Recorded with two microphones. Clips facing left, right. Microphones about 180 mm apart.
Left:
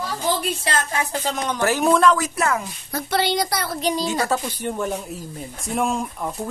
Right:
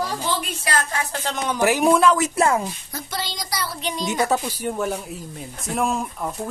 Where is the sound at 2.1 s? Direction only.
25° right (ahead or behind).